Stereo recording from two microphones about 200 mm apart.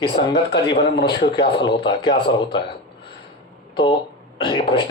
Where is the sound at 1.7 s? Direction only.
25° left (ahead or behind).